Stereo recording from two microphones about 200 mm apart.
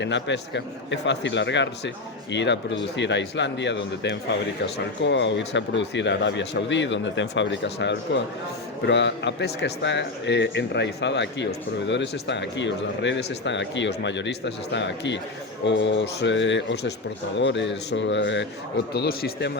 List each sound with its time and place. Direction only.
0.0 s a man's voice: 65° left (ahead or behind)
18.9 s a man's voice: 50° left (ahead or behind)